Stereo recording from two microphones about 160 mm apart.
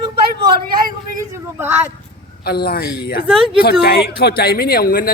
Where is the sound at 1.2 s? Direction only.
15° right (ahead or behind).